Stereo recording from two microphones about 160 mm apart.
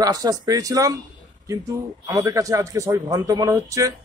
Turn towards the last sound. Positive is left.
turn(degrees=-20)  # may be behind; listen again after turning